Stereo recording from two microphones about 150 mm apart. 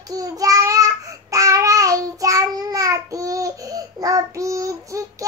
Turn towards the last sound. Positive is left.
turn(degrees=-20)  # may be behind; listen again after turning